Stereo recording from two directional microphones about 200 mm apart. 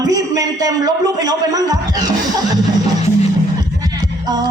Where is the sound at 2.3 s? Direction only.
20° right (ahead or behind).